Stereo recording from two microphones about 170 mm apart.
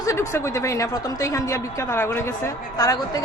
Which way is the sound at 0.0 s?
15° left (ahead or behind).